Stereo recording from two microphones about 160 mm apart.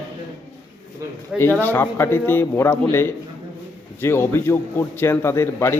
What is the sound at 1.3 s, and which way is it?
A man's voice, 15° left (ahead or behind).